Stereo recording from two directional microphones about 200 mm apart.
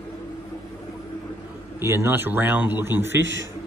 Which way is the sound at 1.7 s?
10° right (ahead or behind).